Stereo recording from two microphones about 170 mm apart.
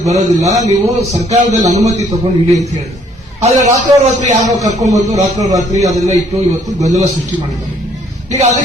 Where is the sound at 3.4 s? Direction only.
45° right (ahead or behind).